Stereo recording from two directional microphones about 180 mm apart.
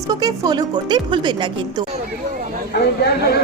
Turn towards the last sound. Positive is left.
turn(degrees=65)  # may be behind; listen again after turning